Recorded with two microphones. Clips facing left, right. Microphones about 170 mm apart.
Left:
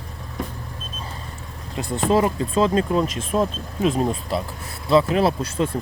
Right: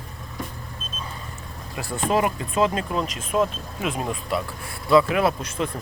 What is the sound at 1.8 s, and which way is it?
Speech, 20° left (ahead or behind).